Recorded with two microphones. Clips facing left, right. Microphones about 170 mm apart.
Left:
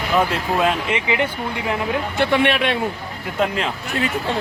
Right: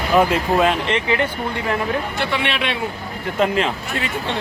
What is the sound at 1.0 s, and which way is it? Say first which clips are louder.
Speech: right 1 dB; 15° left (ahead or behind).